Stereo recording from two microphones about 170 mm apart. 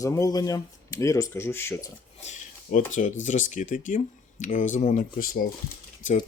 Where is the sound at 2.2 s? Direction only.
45° left (ahead or behind).